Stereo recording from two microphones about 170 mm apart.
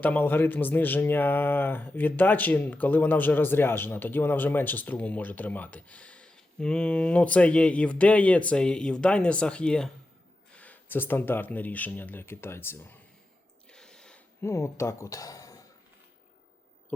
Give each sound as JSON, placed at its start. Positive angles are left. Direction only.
{"t": 0.0, "sound": "speech", "side_deg": 10}
{"t": 13.7, "sound": "squish", "side_deg": 5}
{"t": 14.4, "sound": "speech", "side_deg": 15}